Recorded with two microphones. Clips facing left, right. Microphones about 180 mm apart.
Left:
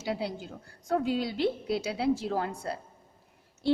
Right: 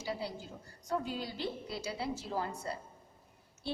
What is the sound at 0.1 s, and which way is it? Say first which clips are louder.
A woman's voice: left 7 dB; 70° left (ahead or behind).